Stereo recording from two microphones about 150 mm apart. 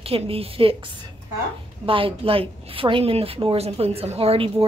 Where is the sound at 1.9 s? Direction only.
35° right (ahead or behind).